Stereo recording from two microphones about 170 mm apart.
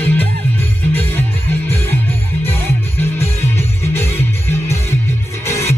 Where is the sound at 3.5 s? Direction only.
15° left (ahead or behind).